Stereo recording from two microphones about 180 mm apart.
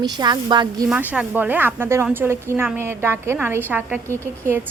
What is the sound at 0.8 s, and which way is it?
A woman's voice, 5° right (ahead or behind).